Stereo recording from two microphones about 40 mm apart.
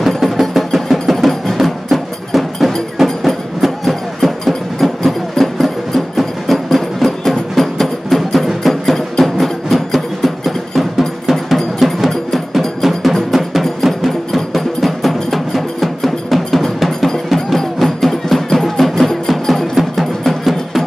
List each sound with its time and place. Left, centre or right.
0.2 s music: centre